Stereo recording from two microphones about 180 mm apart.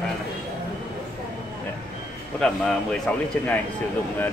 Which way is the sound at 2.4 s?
5° left (ahead or behind).